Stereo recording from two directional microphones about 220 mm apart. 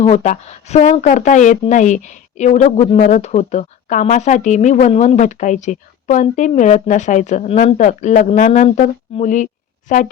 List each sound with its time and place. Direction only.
0.0 s speech: 30° left (ahead or behind)